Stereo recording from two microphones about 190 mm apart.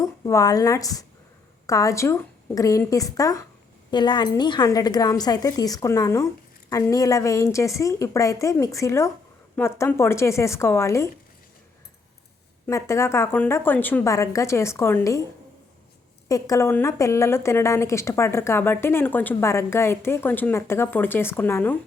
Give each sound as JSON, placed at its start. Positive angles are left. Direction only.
{"t": 0.0, "sound": "a woman's voice", "side_deg": 15}
{"t": 12.6, "sound": "a woman's voice", "side_deg": 15}
{"t": 16.3, "sound": "a woman's voice", "side_deg": 15}